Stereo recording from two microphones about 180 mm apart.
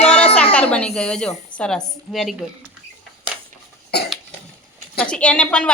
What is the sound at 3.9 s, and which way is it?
Cough, 65° left (ahead or behind).